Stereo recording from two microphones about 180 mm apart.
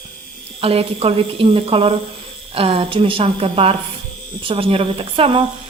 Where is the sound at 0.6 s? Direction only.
30° right (ahead or behind).